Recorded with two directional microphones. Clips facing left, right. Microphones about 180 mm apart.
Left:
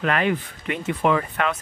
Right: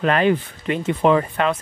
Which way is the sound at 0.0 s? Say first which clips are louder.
Right 5 dB; 30° right (ahead or behind).